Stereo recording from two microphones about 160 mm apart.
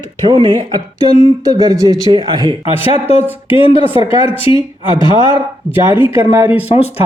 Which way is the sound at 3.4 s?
35° left (ahead or behind).